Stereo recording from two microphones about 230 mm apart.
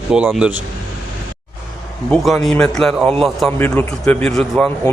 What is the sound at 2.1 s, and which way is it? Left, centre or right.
A man's voice, centre.